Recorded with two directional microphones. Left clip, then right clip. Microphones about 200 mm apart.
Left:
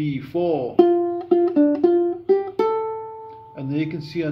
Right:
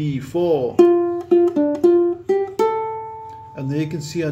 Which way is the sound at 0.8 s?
20° left (ahead or behind).